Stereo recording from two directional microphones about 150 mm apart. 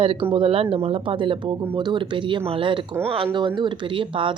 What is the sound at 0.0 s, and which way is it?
A woman's voice, 35° right (ahead or behind).